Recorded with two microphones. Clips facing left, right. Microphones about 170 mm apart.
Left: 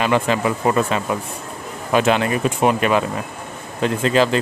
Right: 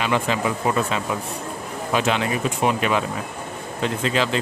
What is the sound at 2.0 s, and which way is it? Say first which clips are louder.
Speech: left 5 dB; 55° left (ahead or behind).